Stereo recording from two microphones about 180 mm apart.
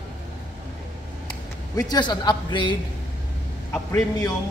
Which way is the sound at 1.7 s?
25° left (ahead or behind).